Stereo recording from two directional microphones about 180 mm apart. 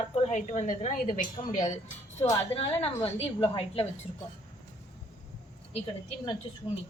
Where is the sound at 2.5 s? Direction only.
30° left (ahead or behind).